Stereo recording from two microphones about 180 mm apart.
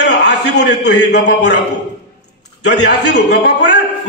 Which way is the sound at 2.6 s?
70° left (ahead or behind).